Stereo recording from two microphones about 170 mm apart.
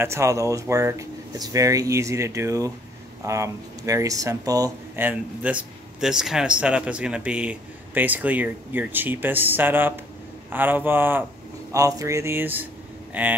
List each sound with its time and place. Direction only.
0.0 s speech: 15° right (ahead or behind)